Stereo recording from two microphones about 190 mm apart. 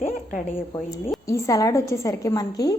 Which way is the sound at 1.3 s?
15° left (ahead or behind).